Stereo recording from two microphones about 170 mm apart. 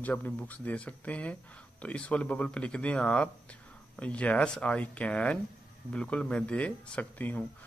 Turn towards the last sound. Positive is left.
turn(degrees=10)  # may be behind; listen again after turning